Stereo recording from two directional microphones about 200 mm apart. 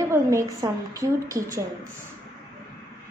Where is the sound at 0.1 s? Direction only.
15° right (ahead or behind).